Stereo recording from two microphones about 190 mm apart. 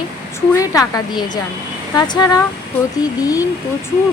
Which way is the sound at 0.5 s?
20° left (ahead or behind).